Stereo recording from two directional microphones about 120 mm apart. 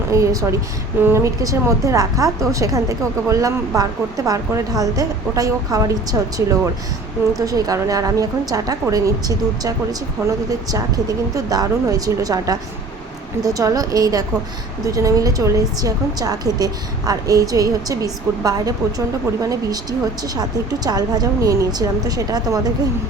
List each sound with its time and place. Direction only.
0.1 s a woman's voice: 25° right (ahead or behind)